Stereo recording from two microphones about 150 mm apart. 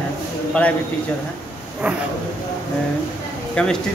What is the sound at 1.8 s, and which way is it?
Speech, 10° right (ahead or behind).